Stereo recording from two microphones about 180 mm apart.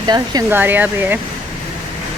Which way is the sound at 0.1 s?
20° right (ahead or behind).